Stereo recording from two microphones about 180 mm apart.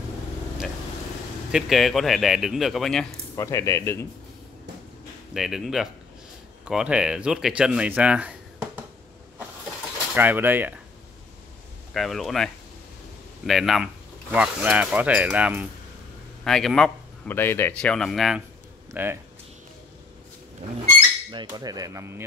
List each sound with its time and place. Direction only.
1.5 s speech: centre (ahead or behind)
3.3 s speech: 15° left (ahead or behind)
5.3 s speech: centre (ahead or behind)
10.1 s speech: 10° right (ahead or behind)
11.9 s speech: centre (ahead or behind)
13.5 s speech: centre (ahead or behind)
16.4 s speech: 5° left (ahead or behind)
18.9 s speech: 10° right (ahead or behind)
21.3 s speech: 25° right (ahead or behind)